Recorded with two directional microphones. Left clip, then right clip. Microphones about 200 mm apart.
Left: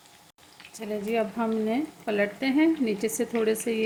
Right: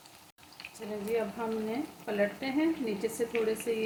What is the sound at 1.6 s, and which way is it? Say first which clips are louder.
Speech: left 7 dB; 60° left (ahead or behind).